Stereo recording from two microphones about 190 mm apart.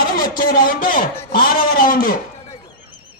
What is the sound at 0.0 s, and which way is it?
A man's voice, 50° left (ahead or behind).